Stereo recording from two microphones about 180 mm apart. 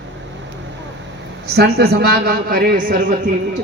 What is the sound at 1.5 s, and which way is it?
A man's voice, 65° right (ahead or behind).